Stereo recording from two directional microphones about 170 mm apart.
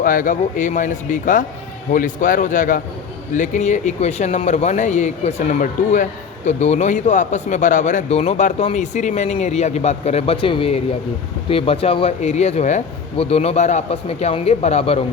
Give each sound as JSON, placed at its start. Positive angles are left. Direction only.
{"t": 0.0, "sound": "speech", "side_deg": 55}